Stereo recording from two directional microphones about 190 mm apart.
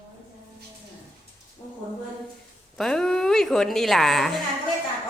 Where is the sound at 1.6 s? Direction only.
20° left (ahead or behind).